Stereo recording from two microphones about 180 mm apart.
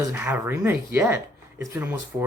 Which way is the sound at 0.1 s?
10° right (ahead or behind).